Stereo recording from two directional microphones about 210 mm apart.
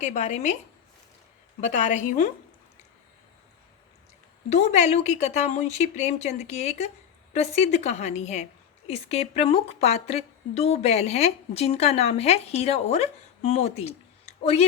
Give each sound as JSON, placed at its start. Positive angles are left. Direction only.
{"t": 0.0, "sound": "a woman's voice", "side_deg": 35}
{"t": 1.6, "sound": "a woman's voice", "side_deg": 35}
{"t": 4.4, "sound": "a woman's voice", "side_deg": 30}